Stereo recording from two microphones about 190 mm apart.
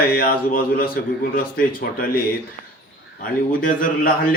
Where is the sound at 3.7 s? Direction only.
45° left (ahead or behind).